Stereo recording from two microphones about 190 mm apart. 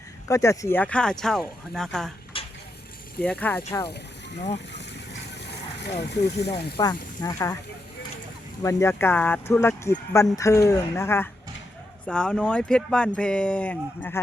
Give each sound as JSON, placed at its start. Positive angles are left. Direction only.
{"t": 0.3, "sound": "speech", "side_deg": 15}
{"t": 2.3, "sound": "stir", "side_deg": 30}
{"t": 3.2, "sound": "speech", "side_deg": 5}
{"t": 5.3, "sound": "a sound", "side_deg": 65}
{"t": 6.7, "sound": "speech", "side_deg": 20}
{"t": 8.6, "sound": "speech", "side_deg": 15}